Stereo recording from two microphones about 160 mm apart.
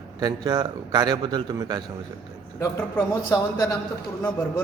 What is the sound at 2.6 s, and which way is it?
A man's voice, 20° left (ahead or behind).